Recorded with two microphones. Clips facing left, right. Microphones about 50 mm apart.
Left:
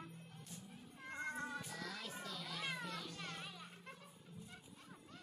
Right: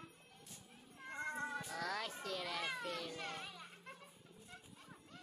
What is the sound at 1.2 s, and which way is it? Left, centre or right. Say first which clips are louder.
Cat: right 2 dB; centre.